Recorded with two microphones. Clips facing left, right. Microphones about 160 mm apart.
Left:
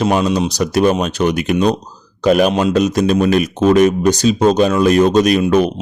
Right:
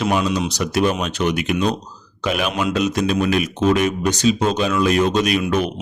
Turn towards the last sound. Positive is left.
turn(degrees=40)  # may be behind; listen again after turning